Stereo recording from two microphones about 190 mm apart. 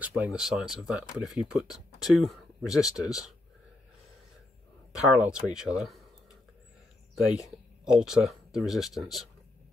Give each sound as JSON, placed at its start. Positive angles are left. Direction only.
{"t": 0.0, "sound": "speech", "side_deg": -10}
{"t": 4.9, "sound": "speech", "side_deg": -5}
{"t": 7.4, "sound": "speech", "side_deg": -5}